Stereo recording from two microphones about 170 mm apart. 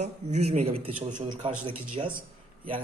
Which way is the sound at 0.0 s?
40° right (ahead or behind).